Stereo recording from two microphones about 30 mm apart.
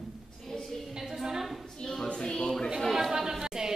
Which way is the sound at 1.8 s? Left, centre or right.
Centre.